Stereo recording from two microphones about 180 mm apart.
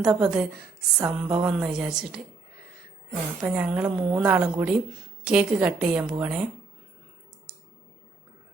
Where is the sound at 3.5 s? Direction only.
10° right (ahead or behind).